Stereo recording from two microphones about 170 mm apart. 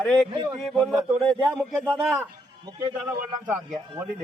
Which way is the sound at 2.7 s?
20° right (ahead or behind).